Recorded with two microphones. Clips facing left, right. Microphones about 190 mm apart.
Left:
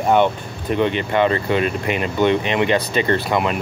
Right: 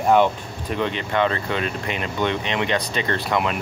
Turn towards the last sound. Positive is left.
turn(degrees=5)  # may be behind; listen again after turning